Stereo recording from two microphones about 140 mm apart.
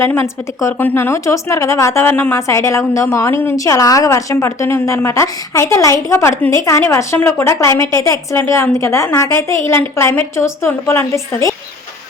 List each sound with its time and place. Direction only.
0.0 s a woman's voice: 20° left (ahead or behind)